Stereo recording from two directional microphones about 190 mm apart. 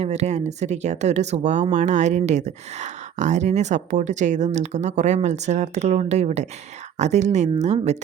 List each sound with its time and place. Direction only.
0.0 s speech: 35° right (ahead or behind)